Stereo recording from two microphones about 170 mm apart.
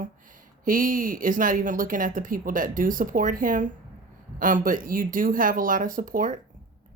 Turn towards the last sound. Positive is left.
turn(degrees=-55)  # may be behind; listen again after turning